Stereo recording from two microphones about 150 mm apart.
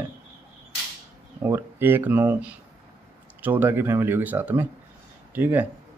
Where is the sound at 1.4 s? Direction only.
15° right (ahead or behind).